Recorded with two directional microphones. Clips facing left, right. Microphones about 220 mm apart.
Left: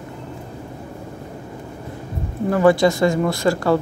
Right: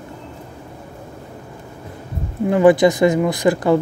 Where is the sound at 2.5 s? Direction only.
20° right (ahead or behind).